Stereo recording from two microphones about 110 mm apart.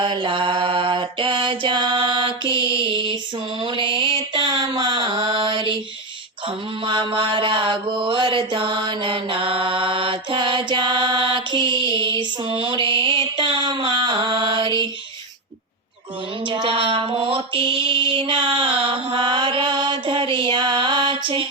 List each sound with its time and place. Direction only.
0.0 s mantra: 50° right (ahead or behind)
6.8 s mantra: 50° right (ahead or behind)
13.3 s a sound: 50° right (ahead or behind)
16.5 s mantra: 50° right (ahead or behind)